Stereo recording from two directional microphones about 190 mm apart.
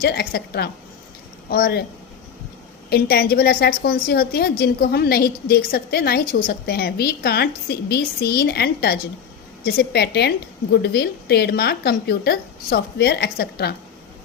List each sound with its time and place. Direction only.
0.0 s a woman's voice: 55° left (ahead or behind)
2.9 s a woman's voice: 55° left (ahead or behind)